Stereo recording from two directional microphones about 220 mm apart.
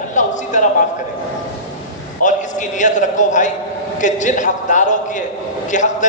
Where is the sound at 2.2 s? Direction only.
35° left (ahead or behind).